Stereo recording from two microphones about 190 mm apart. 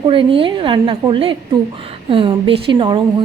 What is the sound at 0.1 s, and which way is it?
A woman's voice, 25° right (ahead or behind).